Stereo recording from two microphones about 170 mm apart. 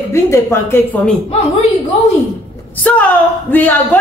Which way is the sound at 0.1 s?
15° left (ahead or behind).